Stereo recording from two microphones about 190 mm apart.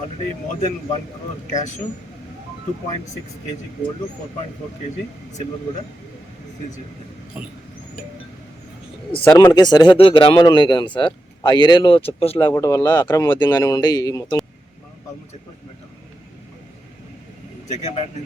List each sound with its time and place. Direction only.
9.2 s speech: 10° left (ahead or behind)
9.5 s speech: 20° left (ahead or behind)
12.5 s speech: 15° left (ahead or behind)
17.7 s a man's voice: 35° left (ahead or behind)